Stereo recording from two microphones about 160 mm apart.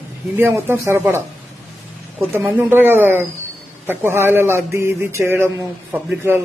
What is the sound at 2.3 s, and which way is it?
A man's voice, 10° right (ahead or behind).